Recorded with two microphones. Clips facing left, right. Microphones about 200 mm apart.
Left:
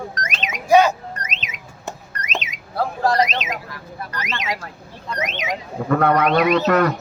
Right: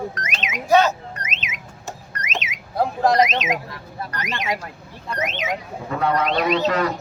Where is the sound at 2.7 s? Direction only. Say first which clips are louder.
Right 1 dB; 20° right (ahead or behind).